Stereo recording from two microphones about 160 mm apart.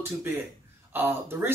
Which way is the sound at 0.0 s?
15° right (ahead or behind).